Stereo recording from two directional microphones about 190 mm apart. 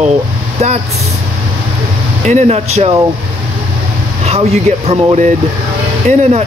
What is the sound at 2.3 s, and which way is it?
Speech, 35° right (ahead or behind).